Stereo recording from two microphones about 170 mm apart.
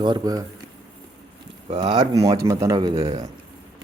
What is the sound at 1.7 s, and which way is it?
Speech, 25° right (ahead or behind).